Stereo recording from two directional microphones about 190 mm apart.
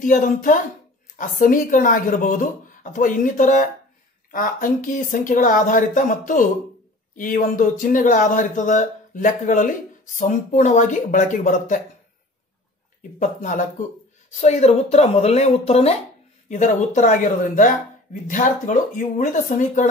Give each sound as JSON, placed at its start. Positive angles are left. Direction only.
{"t": 0.0, "sound": "speech", "side_deg": 45}
{"t": 13.2, "sound": "speech", "side_deg": 40}